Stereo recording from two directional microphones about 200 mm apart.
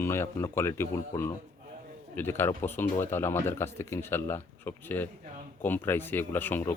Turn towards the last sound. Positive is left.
turn(degrees=10)  # may be behind; listen again after turning